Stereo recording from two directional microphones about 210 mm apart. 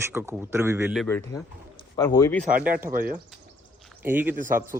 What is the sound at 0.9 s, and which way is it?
Speech, 5° left (ahead or behind).